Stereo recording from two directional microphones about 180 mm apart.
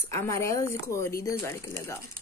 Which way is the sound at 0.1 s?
15° left (ahead or behind).